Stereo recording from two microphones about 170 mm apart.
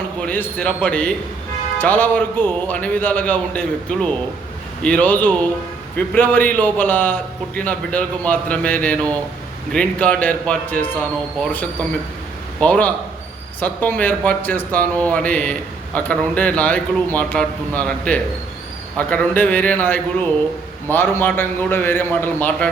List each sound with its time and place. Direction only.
0.2 s a man's voice: 10° left (ahead or behind)
12.5 s a man's voice: 5° left (ahead or behind)